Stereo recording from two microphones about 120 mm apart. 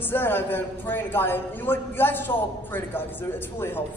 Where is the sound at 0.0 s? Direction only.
15° left (ahead or behind).